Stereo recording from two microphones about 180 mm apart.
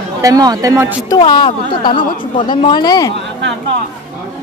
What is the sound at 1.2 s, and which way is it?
A woman's voice, 25° left (ahead or behind).